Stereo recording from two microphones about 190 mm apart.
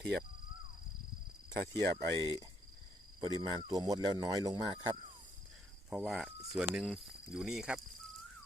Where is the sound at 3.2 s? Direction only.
20° right (ahead or behind).